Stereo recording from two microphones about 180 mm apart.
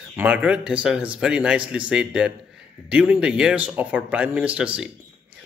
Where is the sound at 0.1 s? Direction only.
10° right (ahead or behind).